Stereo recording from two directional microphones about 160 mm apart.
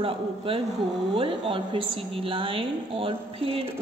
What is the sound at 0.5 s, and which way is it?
A woman's voice, 35° right (ahead or behind).